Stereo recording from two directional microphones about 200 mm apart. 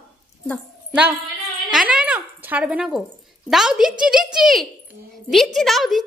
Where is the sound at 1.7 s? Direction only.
5° right (ahead or behind).